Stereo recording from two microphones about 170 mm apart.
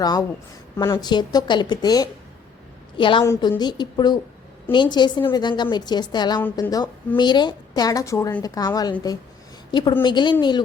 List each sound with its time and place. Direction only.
0.0 s a woman's voice: 20° left (ahead or behind)